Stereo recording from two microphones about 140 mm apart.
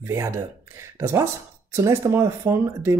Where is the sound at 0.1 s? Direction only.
20° right (ahead or behind).